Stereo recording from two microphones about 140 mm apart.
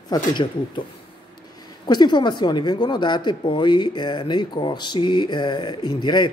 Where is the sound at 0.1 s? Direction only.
35° left (ahead or behind).